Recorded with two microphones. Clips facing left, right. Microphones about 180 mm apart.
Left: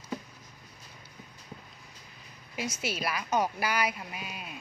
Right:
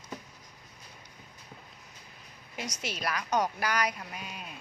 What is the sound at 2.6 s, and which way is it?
A woman's voice, 5° left (ahead or behind).